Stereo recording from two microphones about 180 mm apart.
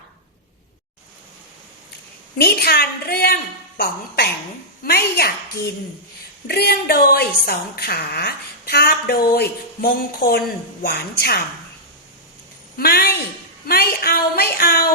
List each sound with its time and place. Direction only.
2.4 s a woman's voice: 60° left (ahead or behind)
12.7 s a woman's voice: 60° left (ahead or behind)